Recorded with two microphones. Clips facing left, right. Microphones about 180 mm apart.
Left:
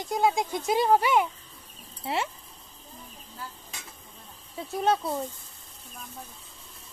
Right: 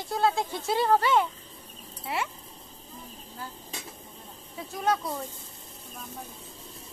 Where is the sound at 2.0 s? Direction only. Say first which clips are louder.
Left 2 dB; 25° left (ahead or behind).